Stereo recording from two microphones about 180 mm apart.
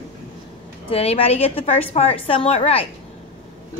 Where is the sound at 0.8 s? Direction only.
35° left (ahead or behind).